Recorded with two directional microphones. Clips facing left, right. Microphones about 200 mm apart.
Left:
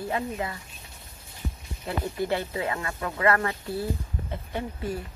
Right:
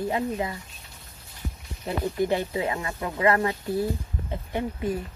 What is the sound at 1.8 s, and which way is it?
A woman's voice, 15° right (ahead or behind).